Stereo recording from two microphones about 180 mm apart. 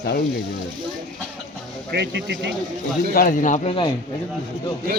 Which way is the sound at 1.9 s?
65° right (ahead or behind).